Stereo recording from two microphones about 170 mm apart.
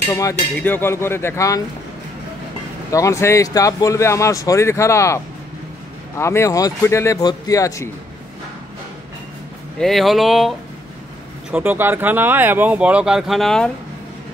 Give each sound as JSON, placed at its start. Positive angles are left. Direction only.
{"t": 0.1, "sound": "speech", "side_deg": 20}
{"t": 2.9, "sound": "speech", "side_deg": 20}
{"t": 9.8, "sound": "speech", "side_deg": 0}
{"t": 11.5, "sound": "speech", "side_deg": -10}